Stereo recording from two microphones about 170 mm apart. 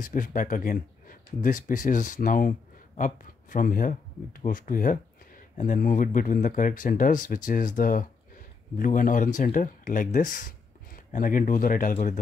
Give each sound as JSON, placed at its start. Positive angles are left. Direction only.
{"t": 0.0, "sound": "speech", "side_deg": 50}